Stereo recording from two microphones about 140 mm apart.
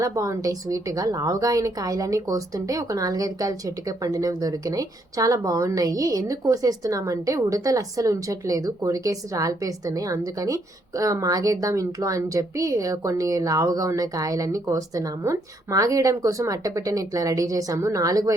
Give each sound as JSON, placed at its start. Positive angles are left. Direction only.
{"t": 0.0, "sound": "speech", "side_deg": -25}